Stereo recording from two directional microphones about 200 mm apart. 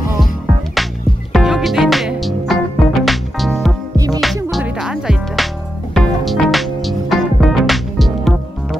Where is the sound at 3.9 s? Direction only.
15° right (ahead or behind).